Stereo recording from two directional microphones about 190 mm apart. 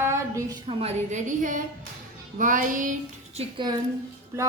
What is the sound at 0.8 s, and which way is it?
Speech, 35° right (ahead or behind).